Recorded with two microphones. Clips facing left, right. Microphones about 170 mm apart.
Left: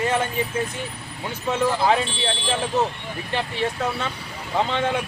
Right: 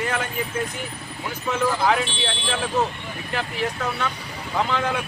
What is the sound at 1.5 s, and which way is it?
Speech, 30° left (ahead or behind).